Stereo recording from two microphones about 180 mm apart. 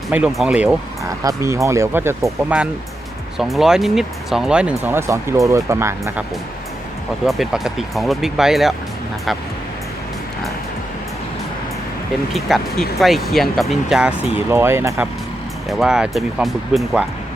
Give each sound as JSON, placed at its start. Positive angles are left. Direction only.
{"t": 0.1, "sound": "speech", "side_deg": -5}
{"t": 1.2, "sound": "speech", "side_deg": -15}
{"t": 7.3, "sound": "speech", "side_deg": 0}
{"t": 12.3, "sound": "speech", "side_deg": 0}
{"t": 15.8, "sound": "speech", "side_deg": -5}